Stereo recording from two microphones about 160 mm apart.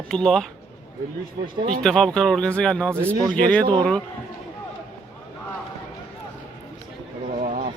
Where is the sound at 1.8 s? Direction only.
5° left (ahead or behind).